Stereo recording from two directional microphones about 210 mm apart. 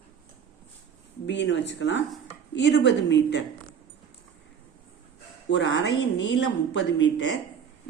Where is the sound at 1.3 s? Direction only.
55° left (ahead or behind).